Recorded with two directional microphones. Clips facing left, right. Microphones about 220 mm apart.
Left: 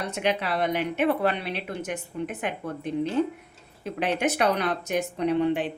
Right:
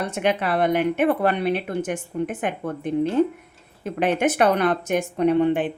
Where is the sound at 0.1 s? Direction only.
50° right (ahead or behind).